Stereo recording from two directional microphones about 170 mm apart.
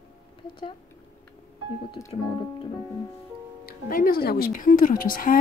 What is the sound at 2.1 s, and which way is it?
Keyboard, 35° left (ahead or behind).